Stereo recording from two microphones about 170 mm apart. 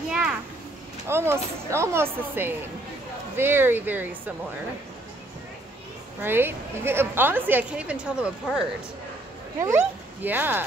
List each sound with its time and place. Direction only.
0.1 s a sound: 5° right (ahead or behind)
1.0 s a woman's voice: 15° right (ahead or behind)
6.2 s a woman's voice: 10° right (ahead or behind)